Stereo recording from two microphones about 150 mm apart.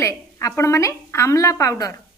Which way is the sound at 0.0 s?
20° left (ahead or behind).